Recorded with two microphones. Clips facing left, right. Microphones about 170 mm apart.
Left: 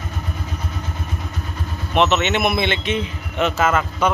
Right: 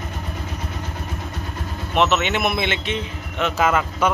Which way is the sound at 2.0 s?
5° right (ahead or behind).